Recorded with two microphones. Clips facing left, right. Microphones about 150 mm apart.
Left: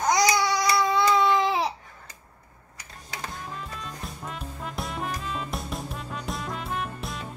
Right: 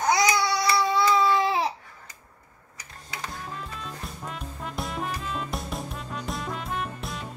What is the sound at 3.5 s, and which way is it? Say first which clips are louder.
Music: even; centre (ahead or behind).